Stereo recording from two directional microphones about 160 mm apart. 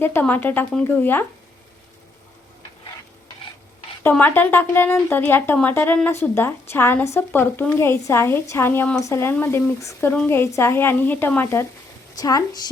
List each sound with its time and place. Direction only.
0.0 s a woman's voice: 10° left (ahead or behind)
4.0 s a woman's voice: 10° left (ahead or behind)